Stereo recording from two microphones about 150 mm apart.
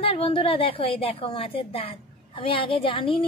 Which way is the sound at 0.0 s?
40° left (ahead or behind).